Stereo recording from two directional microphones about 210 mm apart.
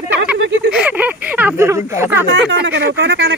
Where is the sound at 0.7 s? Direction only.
5° right (ahead or behind).